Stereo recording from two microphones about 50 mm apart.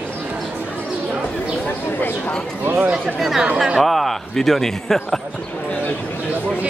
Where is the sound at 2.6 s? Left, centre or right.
Right.